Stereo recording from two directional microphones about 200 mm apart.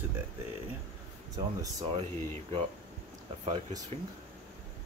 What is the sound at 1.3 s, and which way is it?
Speech, 20° right (ahead or behind).